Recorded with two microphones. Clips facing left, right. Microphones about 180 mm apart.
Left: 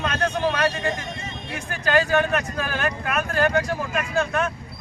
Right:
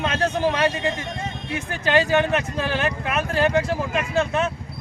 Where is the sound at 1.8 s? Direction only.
25° right (ahead or behind).